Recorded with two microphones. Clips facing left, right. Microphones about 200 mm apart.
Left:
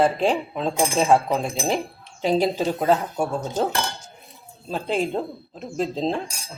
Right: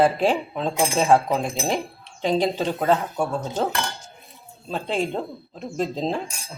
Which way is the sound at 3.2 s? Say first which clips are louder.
Even; 15° left (ahead or behind).